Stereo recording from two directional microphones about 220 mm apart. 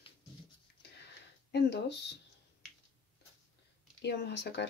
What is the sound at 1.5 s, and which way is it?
Speech, 50° left (ahead or behind).